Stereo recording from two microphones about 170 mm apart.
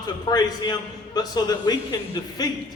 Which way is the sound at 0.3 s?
25° left (ahead or behind).